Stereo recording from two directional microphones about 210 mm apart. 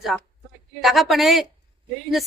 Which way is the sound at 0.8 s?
Centre (ahead or behind).